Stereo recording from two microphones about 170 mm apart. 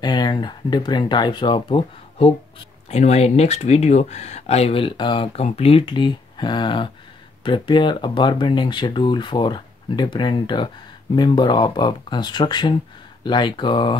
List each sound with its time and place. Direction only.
0.0 s speech: 25° left (ahead or behind)